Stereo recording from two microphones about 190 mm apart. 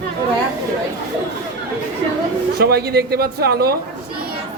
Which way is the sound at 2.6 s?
55° right (ahead or behind).